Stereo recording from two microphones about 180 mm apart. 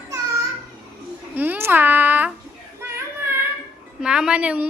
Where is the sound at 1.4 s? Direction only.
10° right (ahead or behind).